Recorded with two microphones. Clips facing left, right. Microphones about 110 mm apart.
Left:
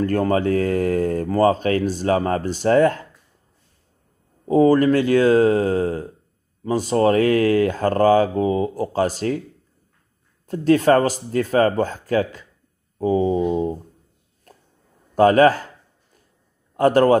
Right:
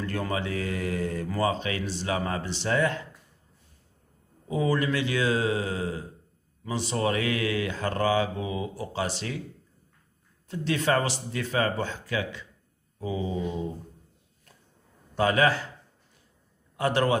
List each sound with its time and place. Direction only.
0.0 s speech: 45° left (ahead or behind)
4.5 s speech: 45° left (ahead or behind)
10.5 s speech: 45° left (ahead or behind)
15.1 s speech: 45° left (ahead or behind)
16.7 s a man's voice: 45° left (ahead or behind)